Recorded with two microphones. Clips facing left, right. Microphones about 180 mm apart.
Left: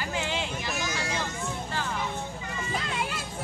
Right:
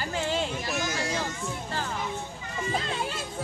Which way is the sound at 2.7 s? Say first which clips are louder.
Right 1 dB; 30° right (ahead or behind).